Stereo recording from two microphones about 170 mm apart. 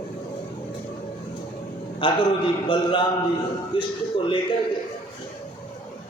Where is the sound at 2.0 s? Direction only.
30° left (ahead or behind).